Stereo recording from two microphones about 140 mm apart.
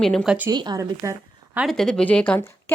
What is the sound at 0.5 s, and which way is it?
Speech, 30° right (ahead or behind).